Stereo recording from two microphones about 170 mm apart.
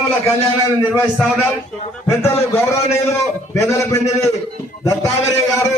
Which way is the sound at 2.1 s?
15° left (ahead or behind).